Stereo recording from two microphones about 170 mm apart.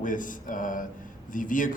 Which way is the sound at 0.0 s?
50° left (ahead or behind).